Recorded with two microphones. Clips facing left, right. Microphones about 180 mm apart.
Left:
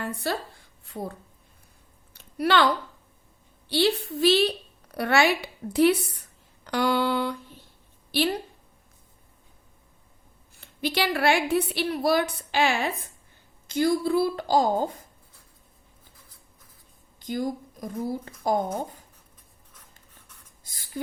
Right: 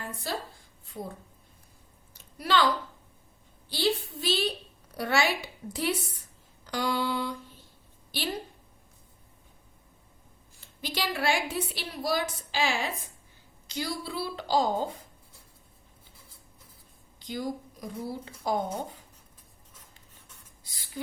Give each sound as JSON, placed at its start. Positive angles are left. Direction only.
{"t": 0.0, "sound": "a woman's voice", "side_deg": 70}
{"t": 2.1, "sound": "a sound", "side_deg": 65}
{"t": 3.7, "sound": "a woman's voice", "side_deg": 65}
{"t": 10.6, "sound": "a woman's voice", "side_deg": 65}
{"t": 17.2, "sound": "a woman's voice", "side_deg": 50}
{"t": 20.7, "sound": "a sound", "side_deg": 50}